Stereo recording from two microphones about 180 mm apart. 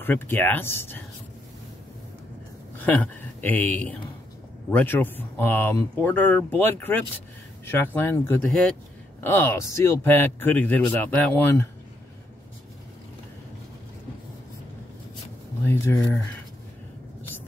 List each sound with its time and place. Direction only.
0.0 s speech: 10° left (ahead or behind)
2.8 s speech: 10° left (ahead or behind)
15.6 s speech: 10° left (ahead or behind)